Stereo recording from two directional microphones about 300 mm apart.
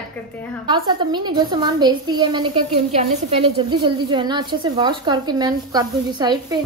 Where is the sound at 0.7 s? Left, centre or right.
Centre.